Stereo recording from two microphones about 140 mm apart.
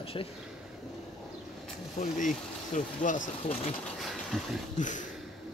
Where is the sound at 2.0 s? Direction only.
65° left (ahead or behind).